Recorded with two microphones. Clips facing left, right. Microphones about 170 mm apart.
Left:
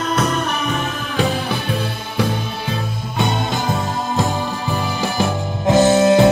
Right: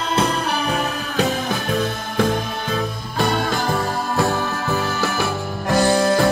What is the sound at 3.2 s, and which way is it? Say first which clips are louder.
Music: even; 20° left (ahead or behind).